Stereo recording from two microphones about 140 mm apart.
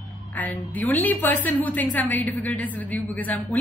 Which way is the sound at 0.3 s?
10° left (ahead or behind).